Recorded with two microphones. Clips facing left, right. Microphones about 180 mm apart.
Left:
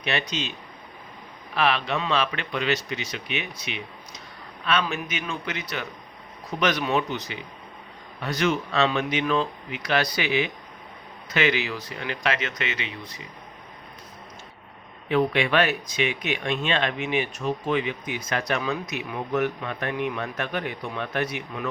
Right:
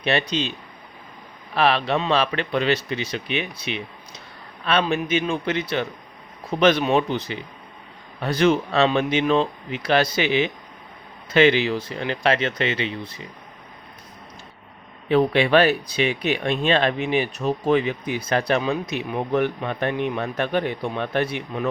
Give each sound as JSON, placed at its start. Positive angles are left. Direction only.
{"t": 0.0, "sound": "speech", "side_deg": -35}
{"t": 1.5, "sound": "speech", "side_deg": -35}
{"t": 15.1, "sound": "speech", "side_deg": -35}